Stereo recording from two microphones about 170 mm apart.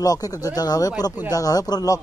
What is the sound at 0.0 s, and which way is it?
Speech, 20° left (ahead or behind).